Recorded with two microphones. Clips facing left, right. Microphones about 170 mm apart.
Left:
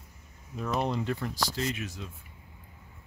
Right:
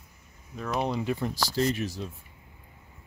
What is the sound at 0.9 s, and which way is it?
Speech, 15° right (ahead or behind).